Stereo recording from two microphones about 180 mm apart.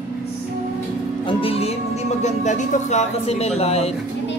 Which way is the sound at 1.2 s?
30° left (ahead or behind).